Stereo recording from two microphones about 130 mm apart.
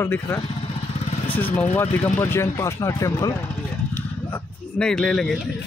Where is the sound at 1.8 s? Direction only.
15° left (ahead or behind).